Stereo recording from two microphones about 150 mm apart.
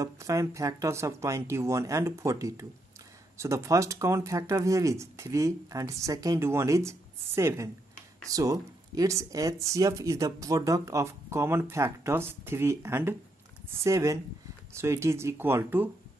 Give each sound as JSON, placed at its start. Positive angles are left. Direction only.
{"t": 0.0, "sound": "speech", "side_deg": -20}